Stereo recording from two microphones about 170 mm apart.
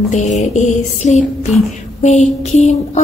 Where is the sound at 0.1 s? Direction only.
45° left (ahead or behind).